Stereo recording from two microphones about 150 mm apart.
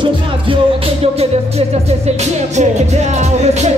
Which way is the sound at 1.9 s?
50° right (ahead or behind).